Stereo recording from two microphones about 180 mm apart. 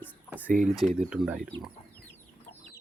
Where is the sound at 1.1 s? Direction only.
5° right (ahead or behind).